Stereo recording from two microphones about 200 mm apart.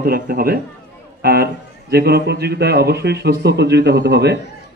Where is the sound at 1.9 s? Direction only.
55° right (ahead or behind).